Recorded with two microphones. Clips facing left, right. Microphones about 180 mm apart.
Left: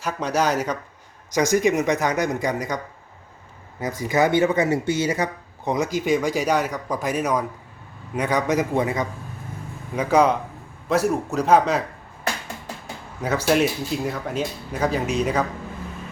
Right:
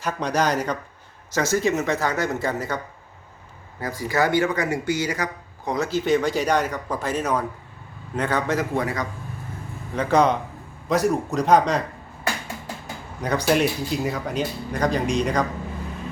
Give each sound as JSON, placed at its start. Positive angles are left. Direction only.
{"t": 0.0, "sound": "speech", "side_deg": 5}
{"t": 9.9, "sound": "speech", "side_deg": 10}
{"t": 13.2, "sound": "speech", "side_deg": 5}